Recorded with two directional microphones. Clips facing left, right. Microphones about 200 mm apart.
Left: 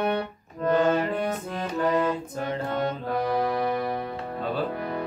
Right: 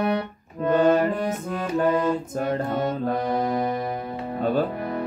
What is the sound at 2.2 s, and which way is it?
Speech, 45° right (ahead or behind).